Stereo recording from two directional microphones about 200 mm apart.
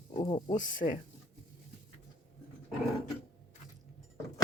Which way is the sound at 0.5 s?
40° left (ahead or behind).